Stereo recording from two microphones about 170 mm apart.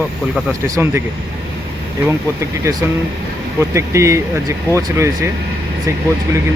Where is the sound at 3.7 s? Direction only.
15° right (ahead or behind).